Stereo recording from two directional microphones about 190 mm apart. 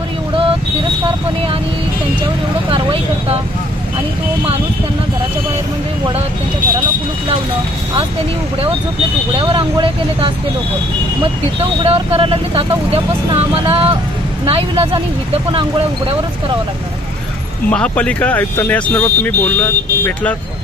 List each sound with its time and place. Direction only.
2.7 s vehicle: 30° right (ahead or behind)
9.4 s speech: 25° right (ahead or behind)
11.8 s speech: 30° right (ahead or behind)
17.6 s speech: 5° left (ahead or behind)